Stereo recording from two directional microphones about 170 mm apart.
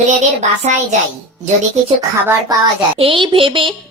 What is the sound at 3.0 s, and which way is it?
Speech, 30° right (ahead or behind).